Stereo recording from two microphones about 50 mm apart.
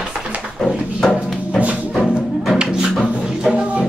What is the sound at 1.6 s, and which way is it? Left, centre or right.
Music, right.